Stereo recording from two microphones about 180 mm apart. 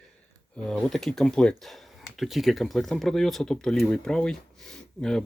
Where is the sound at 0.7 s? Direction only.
Centre (ahead or behind).